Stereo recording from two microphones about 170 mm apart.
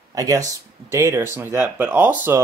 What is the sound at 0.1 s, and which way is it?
Speech, 20° right (ahead or behind).